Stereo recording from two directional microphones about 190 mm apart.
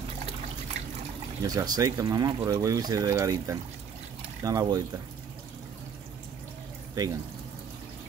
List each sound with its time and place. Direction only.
1.4 s speech: 20° right (ahead or behind)